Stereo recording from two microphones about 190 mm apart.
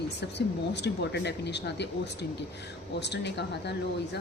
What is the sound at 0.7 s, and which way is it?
Speech, 65° left (ahead or behind).